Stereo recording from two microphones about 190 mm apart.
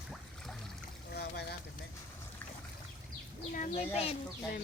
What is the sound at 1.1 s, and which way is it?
Boat, 55° left (ahead or behind).